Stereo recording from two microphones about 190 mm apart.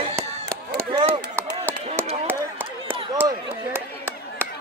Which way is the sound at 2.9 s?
30° right (ahead or behind).